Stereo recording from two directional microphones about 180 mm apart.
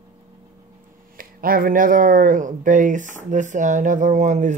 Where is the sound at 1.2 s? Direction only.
50° right (ahead or behind).